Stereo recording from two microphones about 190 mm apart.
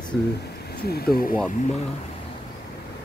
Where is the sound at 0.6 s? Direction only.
55° left (ahead or behind).